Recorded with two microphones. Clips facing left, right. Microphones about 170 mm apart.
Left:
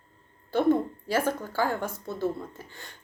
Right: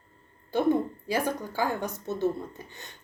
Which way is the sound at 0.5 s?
15° right (ahead or behind).